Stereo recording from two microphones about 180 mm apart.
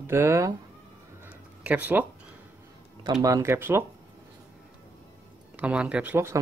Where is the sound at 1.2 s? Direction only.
10° right (ahead or behind).